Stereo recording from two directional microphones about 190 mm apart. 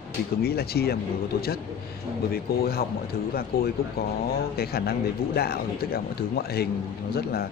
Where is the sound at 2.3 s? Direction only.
50° left (ahead or behind).